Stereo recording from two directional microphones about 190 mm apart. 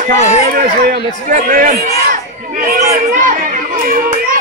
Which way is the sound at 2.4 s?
45° right (ahead or behind).